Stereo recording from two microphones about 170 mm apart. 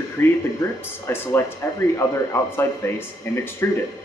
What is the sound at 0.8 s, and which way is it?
Speech, 15° left (ahead or behind).